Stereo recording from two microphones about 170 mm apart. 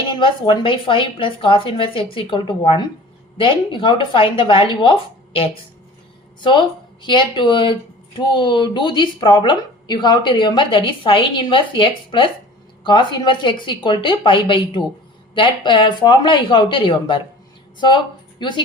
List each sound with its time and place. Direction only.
0.2 s a woman's voice: 30° left (ahead or behind)